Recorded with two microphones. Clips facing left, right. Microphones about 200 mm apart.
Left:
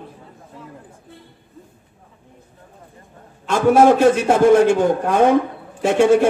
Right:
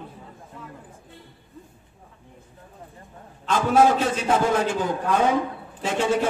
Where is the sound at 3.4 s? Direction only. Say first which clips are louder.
Left 6 dB; 55° left (ahead or behind).